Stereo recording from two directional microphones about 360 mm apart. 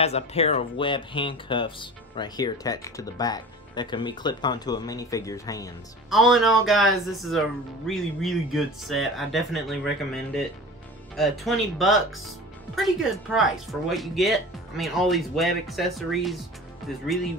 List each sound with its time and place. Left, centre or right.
0.0 s speech: centre